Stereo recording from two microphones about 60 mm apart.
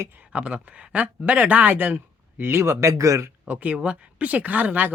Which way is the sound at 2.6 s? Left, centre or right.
Right.